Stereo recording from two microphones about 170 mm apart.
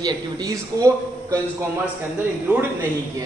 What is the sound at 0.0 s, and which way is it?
Speech, 20° right (ahead or behind).